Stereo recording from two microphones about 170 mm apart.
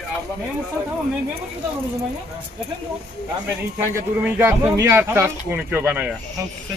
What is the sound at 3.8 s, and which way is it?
Speech, 10° right (ahead or behind).